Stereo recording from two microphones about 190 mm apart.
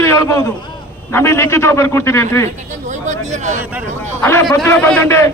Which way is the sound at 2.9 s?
40° right (ahead or behind).